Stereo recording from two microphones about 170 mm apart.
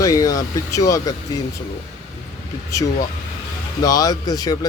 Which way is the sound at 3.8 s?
20° left (ahead or behind).